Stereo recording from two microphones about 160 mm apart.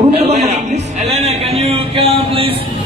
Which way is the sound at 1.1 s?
40° right (ahead or behind).